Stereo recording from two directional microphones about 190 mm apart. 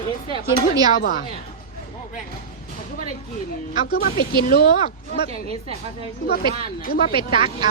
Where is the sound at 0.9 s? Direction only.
45° left (ahead or behind).